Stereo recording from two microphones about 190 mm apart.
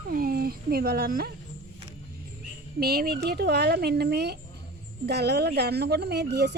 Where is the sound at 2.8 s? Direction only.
55° right (ahead or behind).